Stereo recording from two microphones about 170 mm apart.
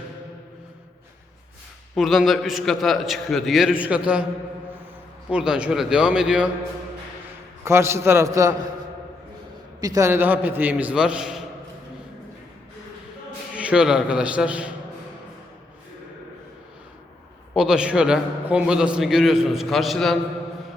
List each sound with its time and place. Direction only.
2.0 s a man's voice: centre (ahead or behind)
5.3 s a man's voice: 5° right (ahead or behind)
7.6 s a man's voice: 15° right (ahead or behind)
9.8 s a man's voice: 20° right (ahead or behind)
13.6 s a man's voice: 5° right (ahead or behind)
17.5 s a man's voice: 5° right (ahead or behind)